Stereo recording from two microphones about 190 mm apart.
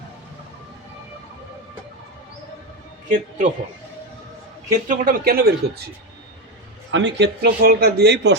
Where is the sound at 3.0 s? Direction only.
40° right (ahead or behind).